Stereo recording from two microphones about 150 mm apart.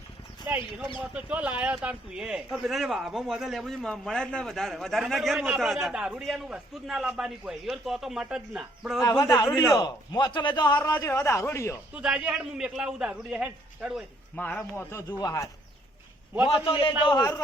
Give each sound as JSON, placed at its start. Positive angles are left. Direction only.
{"t": 0.5, "sound": "speech", "side_deg": -10}
{"t": 9.0, "sound": "a man's voice", "side_deg": 20}
{"t": 11.9, "sound": "speech", "side_deg": -5}
{"t": 14.3, "sound": "speech", "side_deg": 10}
{"t": 16.5, "sound": "a man's voice", "side_deg": 40}
{"t": 17.1, "sound": "a man's voice", "side_deg": 25}